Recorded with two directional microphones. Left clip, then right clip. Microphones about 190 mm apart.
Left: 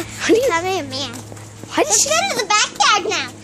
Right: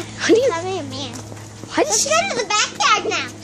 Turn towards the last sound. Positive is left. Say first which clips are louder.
# left 2 dB
turn(degrees=55)  # may be behind; listen again after turning